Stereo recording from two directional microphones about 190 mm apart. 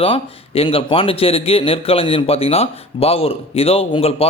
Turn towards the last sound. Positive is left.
turn(degrees=30)  # may be behind; listen again after turning